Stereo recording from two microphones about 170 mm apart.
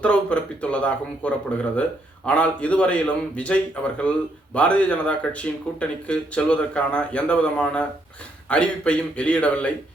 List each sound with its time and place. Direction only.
0.0 s speech: 5° left (ahead or behind)